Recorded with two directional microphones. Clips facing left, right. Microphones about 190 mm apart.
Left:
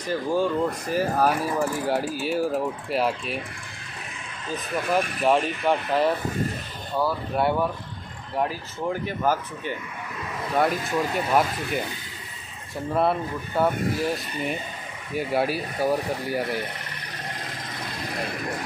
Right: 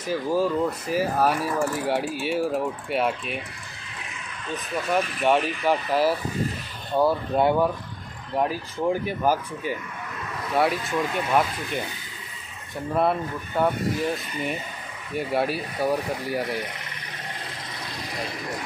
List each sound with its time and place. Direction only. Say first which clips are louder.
0.0 s speech: even; 5° right (ahead or behind)
4.8 s speech: even; centre (ahead or behind)
7.0 s speech: right 3 dB; 20° right (ahead or behind)
10.5 s speech: even; centre (ahead or behind)
12.9 s speech: even; centre (ahead or behind)